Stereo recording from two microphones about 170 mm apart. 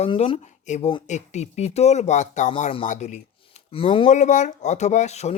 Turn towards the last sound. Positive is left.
turn(degrees=40)  # may be behind; listen again after turning